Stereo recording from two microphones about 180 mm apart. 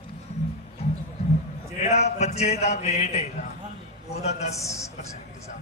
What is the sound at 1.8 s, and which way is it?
A man's voice, 40° left (ahead or behind).